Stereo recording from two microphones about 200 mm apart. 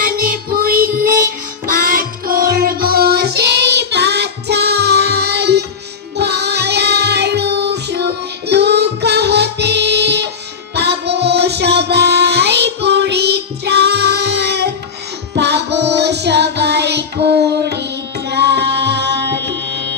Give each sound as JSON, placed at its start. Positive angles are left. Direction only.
{"t": 0.0, "sound": "music", "side_deg": -45}